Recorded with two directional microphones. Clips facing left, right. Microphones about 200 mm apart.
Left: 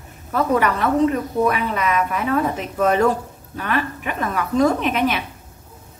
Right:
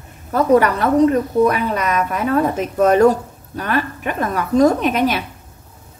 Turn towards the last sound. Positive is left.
turn(degrees=-40)  # may be behind; listen again after turning